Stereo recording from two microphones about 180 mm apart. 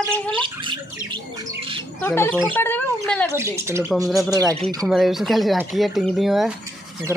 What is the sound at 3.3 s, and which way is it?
Speech, 15° right (ahead or behind).